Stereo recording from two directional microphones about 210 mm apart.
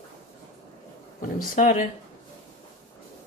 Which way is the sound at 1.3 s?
40° left (ahead or behind).